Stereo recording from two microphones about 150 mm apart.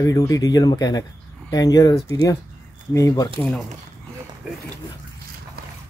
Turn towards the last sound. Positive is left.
turn(degrees=-5)  # may be behind; listen again after turning